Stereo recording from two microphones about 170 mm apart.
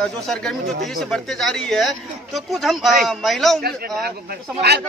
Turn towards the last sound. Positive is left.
turn(degrees=-70)  # may be behind; listen again after turning